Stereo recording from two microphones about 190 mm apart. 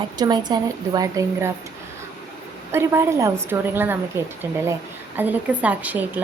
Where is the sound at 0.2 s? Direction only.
20° right (ahead or behind).